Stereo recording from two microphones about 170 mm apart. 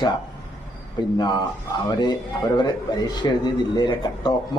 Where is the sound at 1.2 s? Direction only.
25° left (ahead or behind).